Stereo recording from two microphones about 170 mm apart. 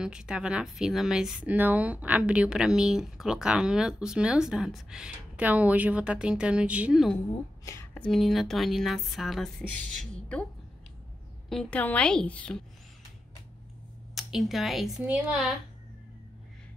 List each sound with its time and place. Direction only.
0.0 s speech: 5° right (ahead or behind)
7.6 s speech: 15° left (ahead or behind)
7.9 s speech: 5° left (ahead or behind)
10.1 s a sound: 5° left (ahead or behind)
11.4 s speech: 5° left (ahead or behind)
14.1 s speech: centre (ahead or behind)